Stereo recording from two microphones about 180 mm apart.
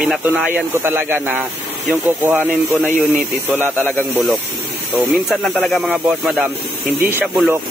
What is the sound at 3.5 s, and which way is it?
Speech, 10° right (ahead or behind).